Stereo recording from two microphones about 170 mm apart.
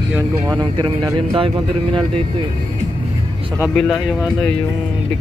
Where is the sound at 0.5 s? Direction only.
25° right (ahead or behind).